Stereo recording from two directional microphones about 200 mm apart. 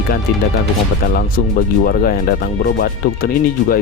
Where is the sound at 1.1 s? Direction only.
45° left (ahead or behind).